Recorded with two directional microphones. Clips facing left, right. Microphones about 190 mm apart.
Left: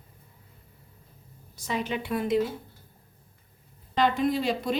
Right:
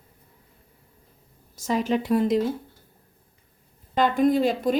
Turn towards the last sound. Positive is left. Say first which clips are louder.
# right 6 dB
turn(degrees=-50)  # may be behind; listen again after turning